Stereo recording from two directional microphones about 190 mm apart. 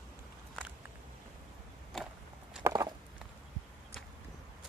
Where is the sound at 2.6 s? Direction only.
20° right (ahead or behind).